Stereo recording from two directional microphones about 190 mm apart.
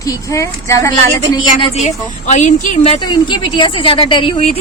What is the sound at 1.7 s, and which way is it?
A woman's voice, 40° left (ahead or behind).